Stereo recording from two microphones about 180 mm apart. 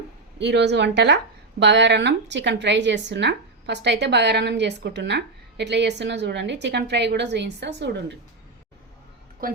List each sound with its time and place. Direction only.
0.3 s speech: 70° right (ahead or behind)
9.4 s speech: 55° right (ahead or behind)